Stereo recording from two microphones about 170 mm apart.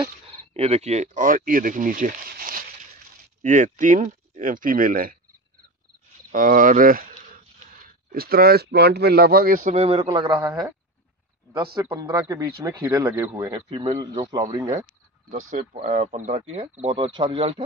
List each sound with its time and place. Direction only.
0.0 s speech: 35° right (ahead or behind); by 5.1 s 55° right (ahead or behind)
6.3 s speech: 50° right (ahead or behind)
9.9 s speech: 25° right (ahead or behind)
13.4 s speech: 30° right (ahead or behind)
15.8 s speech: 40° right (ahead or behind)